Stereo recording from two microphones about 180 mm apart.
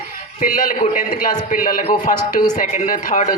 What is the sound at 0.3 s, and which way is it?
Speech, 45° left (ahead or behind).